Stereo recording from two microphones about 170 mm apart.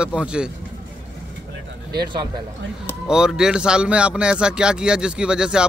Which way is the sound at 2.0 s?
25° right (ahead or behind).